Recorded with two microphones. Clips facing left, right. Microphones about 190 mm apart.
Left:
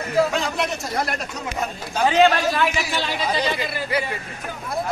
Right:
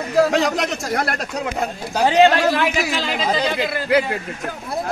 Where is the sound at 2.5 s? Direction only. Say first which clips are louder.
Right 3 dB; 90° right.